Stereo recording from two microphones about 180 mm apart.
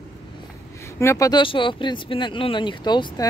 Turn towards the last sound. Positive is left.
turn(degrees=25)  # may be behind; listen again after turning